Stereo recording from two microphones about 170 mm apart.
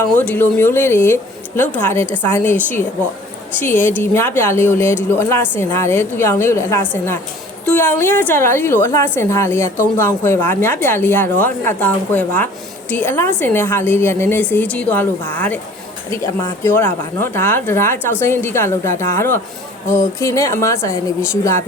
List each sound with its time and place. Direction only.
0.2 s a woman's voice: 10° left (ahead or behind)
3.6 s a woman's voice: 10° left (ahead or behind)